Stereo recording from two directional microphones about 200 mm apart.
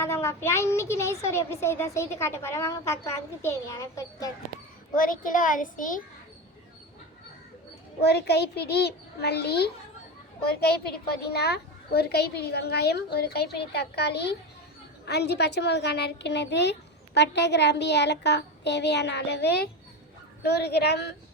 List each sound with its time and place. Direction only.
0.0 s speech: 15° left (ahead or behind)
4.9 s a child's voice: 45° left (ahead or behind)
8.0 s a woman's voice: 55° left (ahead or behind)